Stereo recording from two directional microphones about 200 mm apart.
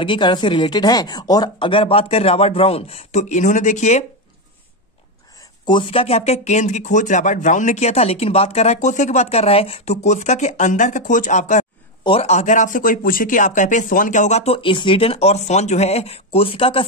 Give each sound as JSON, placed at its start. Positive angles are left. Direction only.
{"t": 0.0, "sound": "speech", "side_deg": 25}
{"t": 5.7, "sound": "speech", "side_deg": 25}